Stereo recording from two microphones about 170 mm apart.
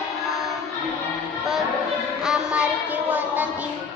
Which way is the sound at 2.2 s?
5° right (ahead or behind).